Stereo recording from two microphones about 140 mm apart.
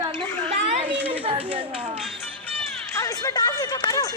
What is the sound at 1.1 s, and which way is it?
Speech, 40° right (ahead or behind).